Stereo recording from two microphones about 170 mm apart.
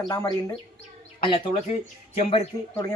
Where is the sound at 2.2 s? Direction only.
35° left (ahead or behind).